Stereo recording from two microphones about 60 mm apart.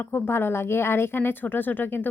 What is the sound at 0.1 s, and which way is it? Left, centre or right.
A woman's voice, left.